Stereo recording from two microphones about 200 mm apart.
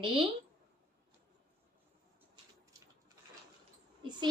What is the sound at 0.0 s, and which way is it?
Speech, 25° right (ahead or behind).